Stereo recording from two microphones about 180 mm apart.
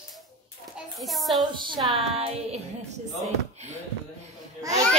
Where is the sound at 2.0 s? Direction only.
35° right (ahead or behind).